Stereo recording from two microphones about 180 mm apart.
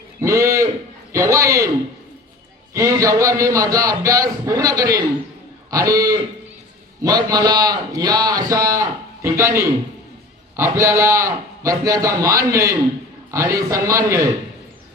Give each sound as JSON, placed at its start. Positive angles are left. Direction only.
{"t": 0.2, "sound": "a man's voice", "side_deg": -15}
{"t": 2.7, "sound": "a man's voice", "side_deg": -20}